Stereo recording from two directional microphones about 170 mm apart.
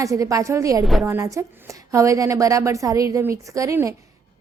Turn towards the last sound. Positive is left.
turn(degrees=-15)  # may be behind; listen again after turning